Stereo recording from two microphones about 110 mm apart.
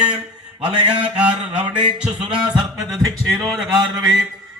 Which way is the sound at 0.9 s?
10° right (ahead or behind).